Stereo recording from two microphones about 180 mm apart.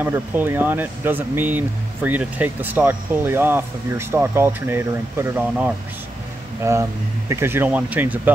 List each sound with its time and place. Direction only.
0.0 s speech: 10° right (ahead or behind)